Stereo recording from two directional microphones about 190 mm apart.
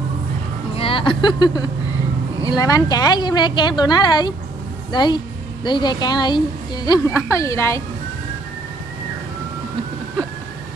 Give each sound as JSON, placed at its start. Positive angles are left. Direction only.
{"t": 0.7, "sound": "a woman's voice", "side_deg": 30}